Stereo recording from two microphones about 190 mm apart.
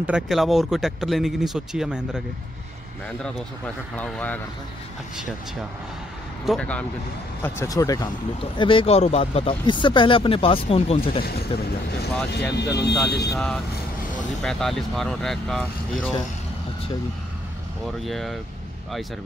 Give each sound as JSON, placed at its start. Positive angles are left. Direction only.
{"t": 0.0, "sound": "speech", "side_deg": -5}
{"t": 6.4, "sound": "speech", "side_deg": 0}
{"t": 11.2, "sound": "speech", "side_deg": 55}
{"t": 13.3, "sound": "speech", "side_deg": 0}
{"t": 18.0, "sound": "speech", "side_deg": 0}